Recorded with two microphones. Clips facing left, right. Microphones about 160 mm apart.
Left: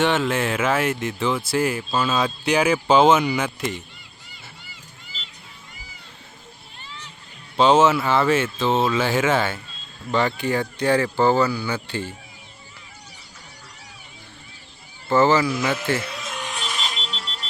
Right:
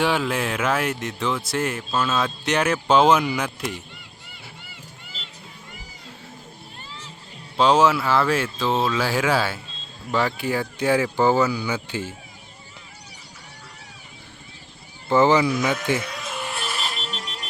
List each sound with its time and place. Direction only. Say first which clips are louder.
0.0 s speech: left 2 dB; centre (ahead or behind)
4.3 s a sound: right 1 dB; 60° right (ahead or behind)
7.5 s speech: left 1 dB; centre (ahead or behind)
15.1 s speech: even; 15° right (ahead or behind)
15.5 s speech: right 1 dB; 5° left (ahead or behind)
16.0 s music: even; centre (ahead or behind)